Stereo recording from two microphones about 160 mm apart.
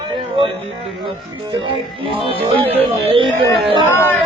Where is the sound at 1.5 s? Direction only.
35° right (ahead or behind).